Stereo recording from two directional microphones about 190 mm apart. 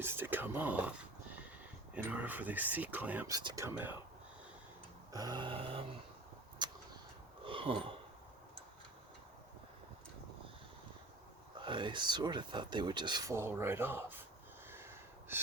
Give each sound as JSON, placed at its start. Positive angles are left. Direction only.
{"t": 0.0, "sound": "speech", "side_deg": -10}
{"t": 2.0, "sound": "speech", "side_deg": -10}
{"t": 5.1, "sound": "speech", "side_deg": -20}
{"t": 6.6, "sound": "a sound", "side_deg": -20}
{"t": 11.6, "sound": "speech", "side_deg": -25}
{"t": 14.7, "sound": "a sound", "side_deg": -15}